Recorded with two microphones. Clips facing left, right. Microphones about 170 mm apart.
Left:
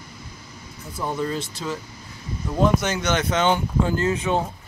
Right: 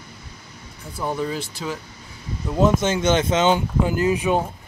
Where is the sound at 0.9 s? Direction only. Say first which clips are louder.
Right 1 dB; 10° right (ahead or behind).